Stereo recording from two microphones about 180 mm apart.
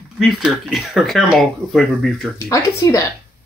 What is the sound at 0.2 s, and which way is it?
Speech, 5° right (ahead or behind).